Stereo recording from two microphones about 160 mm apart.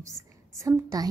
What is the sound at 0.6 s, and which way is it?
Speech, 20° right (ahead or behind).